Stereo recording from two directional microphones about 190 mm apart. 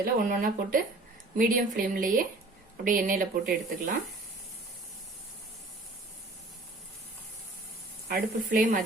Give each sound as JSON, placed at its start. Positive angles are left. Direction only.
{"t": 0.0, "sound": "a woman's voice", "side_deg": -45}
{"t": 8.0, "sound": "a woman's voice", "side_deg": -45}